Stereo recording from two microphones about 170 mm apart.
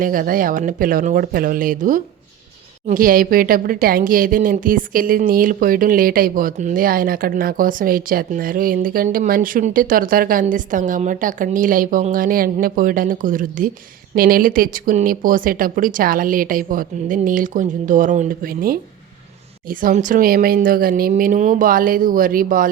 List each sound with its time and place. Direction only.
0.0 s a woman's voice: 55° right (ahead or behind)